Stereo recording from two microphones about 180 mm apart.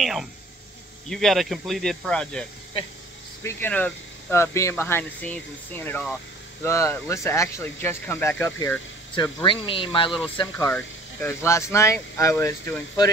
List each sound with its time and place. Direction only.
0.0 s speech: centre (ahead or behind)
3.4 s speech: 10° left (ahead or behind)
9.1 s speech: 25° left (ahead or behind)
10.7 s speech: 15° left (ahead or behind)